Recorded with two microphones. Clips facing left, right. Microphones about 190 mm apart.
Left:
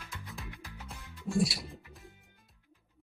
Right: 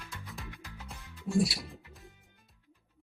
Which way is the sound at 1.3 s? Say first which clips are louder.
Right 1 dB; centre (ahead or behind).